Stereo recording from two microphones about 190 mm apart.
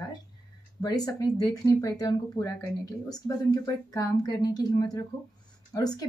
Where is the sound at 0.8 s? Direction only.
20° left (ahead or behind).